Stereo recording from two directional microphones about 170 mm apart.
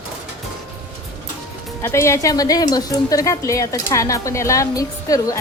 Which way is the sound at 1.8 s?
15° left (ahead or behind).